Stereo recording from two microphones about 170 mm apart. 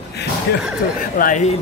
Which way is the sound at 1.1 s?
55° left (ahead or behind).